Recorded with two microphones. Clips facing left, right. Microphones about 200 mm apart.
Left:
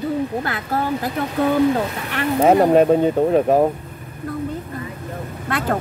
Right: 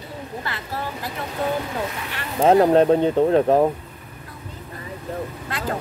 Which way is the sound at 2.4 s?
10° left (ahead or behind).